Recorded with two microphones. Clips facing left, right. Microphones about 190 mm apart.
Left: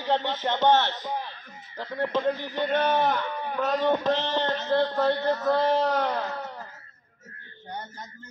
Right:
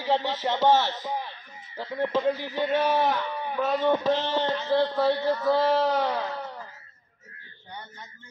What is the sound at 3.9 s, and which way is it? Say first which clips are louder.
Male singing: right 1 dB; 5° right (ahead or behind).